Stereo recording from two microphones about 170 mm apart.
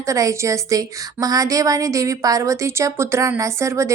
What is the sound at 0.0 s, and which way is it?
A woman's voice, 20° right (ahead or behind).